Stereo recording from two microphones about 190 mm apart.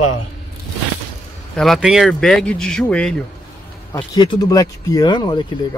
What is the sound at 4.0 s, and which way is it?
Speech, 25° left (ahead or behind).